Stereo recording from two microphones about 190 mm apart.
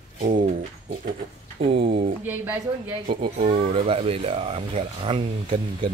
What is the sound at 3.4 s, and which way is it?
Speech, 30° right (ahead or behind).